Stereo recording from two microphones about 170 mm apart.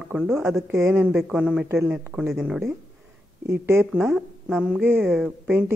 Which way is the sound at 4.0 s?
Centre (ahead or behind).